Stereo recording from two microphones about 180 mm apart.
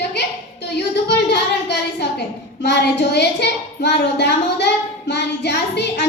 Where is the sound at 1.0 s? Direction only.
70° left (ahead or behind).